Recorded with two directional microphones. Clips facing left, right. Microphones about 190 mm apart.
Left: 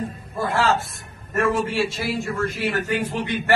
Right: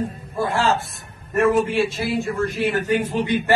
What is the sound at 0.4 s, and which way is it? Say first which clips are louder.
A man's voice: right 1 dB; 15° right (ahead or behind).